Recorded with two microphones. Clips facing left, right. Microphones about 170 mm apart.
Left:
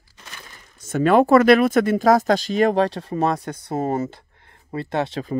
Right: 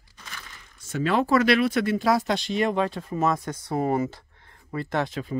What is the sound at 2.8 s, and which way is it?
Speech, 80° left.